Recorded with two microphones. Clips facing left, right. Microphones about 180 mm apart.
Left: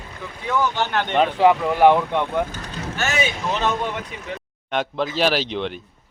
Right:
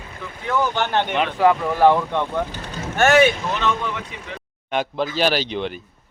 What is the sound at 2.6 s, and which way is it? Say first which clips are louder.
Boat: right 1 dB; 30° right (ahead or behind).